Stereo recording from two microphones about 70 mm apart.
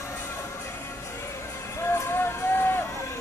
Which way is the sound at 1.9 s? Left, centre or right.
Left.